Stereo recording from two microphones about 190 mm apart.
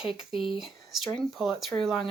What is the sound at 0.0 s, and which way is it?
Speech, centre (ahead or behind).